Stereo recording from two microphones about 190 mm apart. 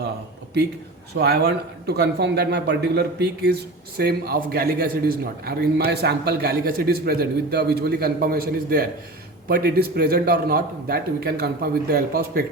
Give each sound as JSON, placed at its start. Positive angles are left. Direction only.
{"t": 1.1, "sound": "a man's voice", "side_deg": -60}